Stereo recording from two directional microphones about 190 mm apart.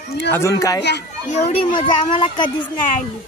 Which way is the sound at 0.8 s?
65° left (ahead or behind).